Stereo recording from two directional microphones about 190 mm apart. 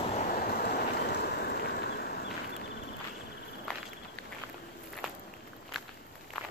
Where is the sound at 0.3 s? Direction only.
55° left (ahead or behind).